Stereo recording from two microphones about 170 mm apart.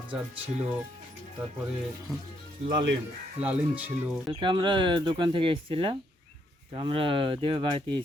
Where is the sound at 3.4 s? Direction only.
10° right (ahead or behind).